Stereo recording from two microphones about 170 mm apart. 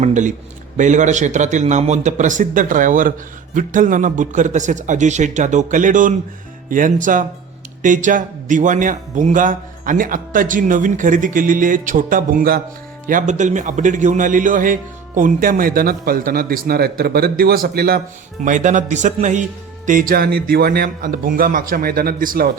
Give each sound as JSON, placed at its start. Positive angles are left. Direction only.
{"t": 0.0, "sound": "a man's voice", "side_deg": -45}
{"t": 18.4, "sound": "a man's voice", "side_deg": -50}